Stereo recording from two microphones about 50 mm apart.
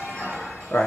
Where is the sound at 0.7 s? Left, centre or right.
Left.